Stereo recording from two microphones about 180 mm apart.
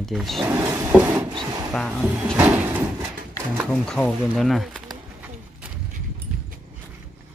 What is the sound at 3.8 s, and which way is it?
Speech, 5° left (ahead or behind).